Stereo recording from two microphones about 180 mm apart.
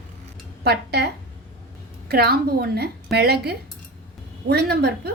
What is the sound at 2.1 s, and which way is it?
A woman's voice, 60° right (ahead or behind).